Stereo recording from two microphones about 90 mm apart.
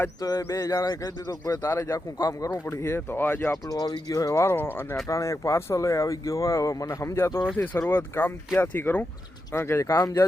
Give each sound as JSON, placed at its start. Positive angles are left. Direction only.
{"t": 0.2, "sound": "speech", "side_deg": 45}
{"t": 3.5, "sound": "speech", "side_deg": 45}
{"t": 4.5, "sound": "speech", "side_deg": 25}
{"t": 5.0, "sound": "speech", "side_deg": 35}
{"t": 9.5, "sound": "speech", "side_deg": 30}
{"t": 9.9, "sound": "speech", "side_deg": 45}